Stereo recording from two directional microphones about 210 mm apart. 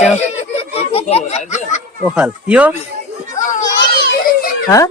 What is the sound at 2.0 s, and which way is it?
Speech, 5° right (ahead or behind).